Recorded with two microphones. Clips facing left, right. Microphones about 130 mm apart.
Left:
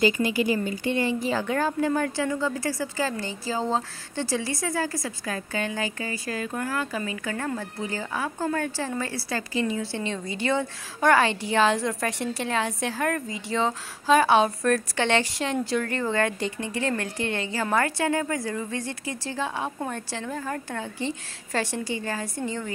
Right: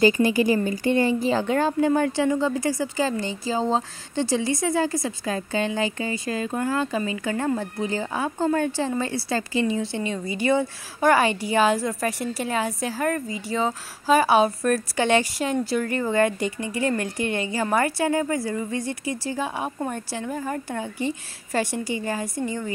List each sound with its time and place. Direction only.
0.0 s a woman's voice: 40° right (ahead or behind)
1.3 s speech: 25° right (ahead or behind)
10.0 s a woman's voice: 10° right (ahead or behind)